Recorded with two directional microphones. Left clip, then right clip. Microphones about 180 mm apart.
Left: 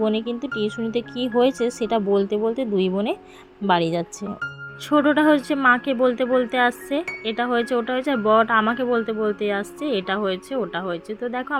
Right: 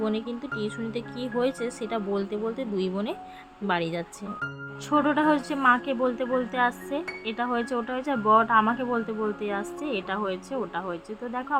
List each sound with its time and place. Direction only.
0.0 s speech: 20° left (ahead or behind)